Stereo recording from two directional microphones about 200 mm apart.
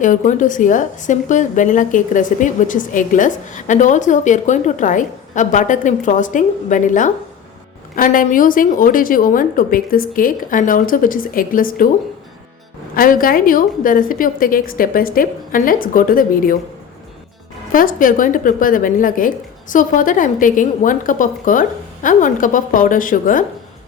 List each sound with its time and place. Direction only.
0.0 s a woman's voice: 40° left (ahead or behind)
13.0 s a woman's voice: 45° left (ahead or behind)
17.7 s a woman's voice: 45° left (ahead or behind)